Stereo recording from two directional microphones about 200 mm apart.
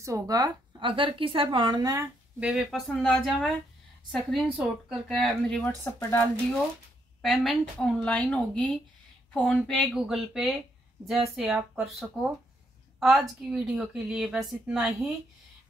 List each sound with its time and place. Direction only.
0.0 s speech: 15° right (ahead or behind)
2.4 s speech: centre (ahead or behind)